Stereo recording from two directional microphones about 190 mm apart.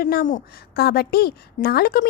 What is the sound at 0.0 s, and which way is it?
A woman's voice, 50° left (ahead or behind).